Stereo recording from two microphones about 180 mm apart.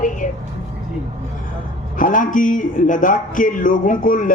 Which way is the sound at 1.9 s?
45° left (ahead or behind).